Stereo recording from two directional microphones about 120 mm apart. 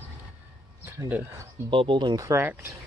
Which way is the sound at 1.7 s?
45° right (ahead or behind).